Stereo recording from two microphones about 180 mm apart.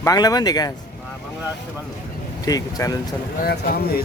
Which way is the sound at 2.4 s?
20° left (ahead or behind).